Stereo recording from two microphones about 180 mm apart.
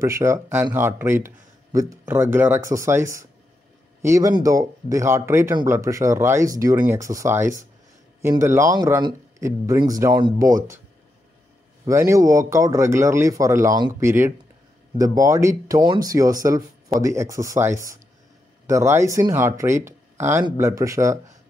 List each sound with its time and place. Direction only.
0.0 s speech: 15° right (ahead or behind)
11.8 s speech: 15° right (ahead or behind)